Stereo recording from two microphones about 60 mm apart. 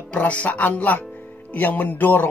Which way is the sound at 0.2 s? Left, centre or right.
Left.